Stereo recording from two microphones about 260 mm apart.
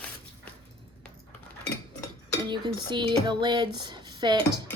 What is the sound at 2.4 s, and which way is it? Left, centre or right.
Speech, centre.